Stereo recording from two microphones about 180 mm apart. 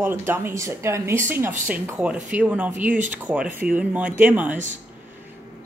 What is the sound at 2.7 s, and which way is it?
Speech, 45° right (ahead or behind).